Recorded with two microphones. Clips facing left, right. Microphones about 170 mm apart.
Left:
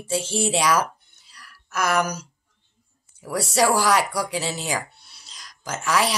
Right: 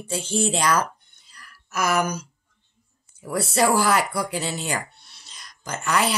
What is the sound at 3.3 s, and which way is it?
Speech, centre (ahead or behind).